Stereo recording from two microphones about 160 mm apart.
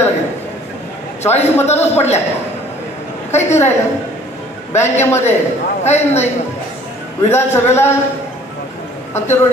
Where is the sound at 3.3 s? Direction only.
45° left (ahead or behind).